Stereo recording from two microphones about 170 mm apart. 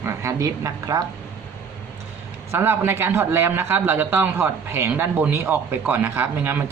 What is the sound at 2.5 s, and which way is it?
A man's voice, 15° right (ahead or behind).